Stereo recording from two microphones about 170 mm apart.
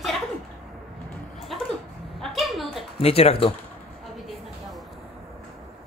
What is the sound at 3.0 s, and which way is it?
Speech, 35° left (ahead or behind).